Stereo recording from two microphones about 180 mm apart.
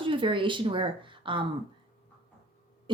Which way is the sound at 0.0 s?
30° right (ahead or behind).